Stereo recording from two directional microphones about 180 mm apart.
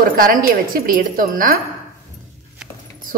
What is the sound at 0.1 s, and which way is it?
A woman's voice, 50° right (ahead or behind).